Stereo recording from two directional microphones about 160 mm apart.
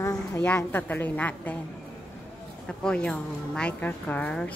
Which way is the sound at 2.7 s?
5° left (ahead or behind).